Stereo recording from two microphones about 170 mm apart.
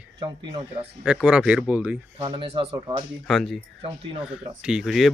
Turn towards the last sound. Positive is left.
turn(degrees=0)  # may be behind; listen again after turning